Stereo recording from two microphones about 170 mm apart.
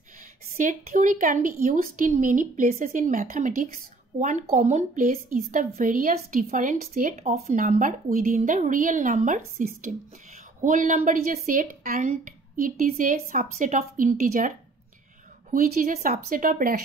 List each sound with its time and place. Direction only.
0.6 s a woman's voice: 50° right (ahead or behind)
15.5 s speech: 55° right (ahead or behind)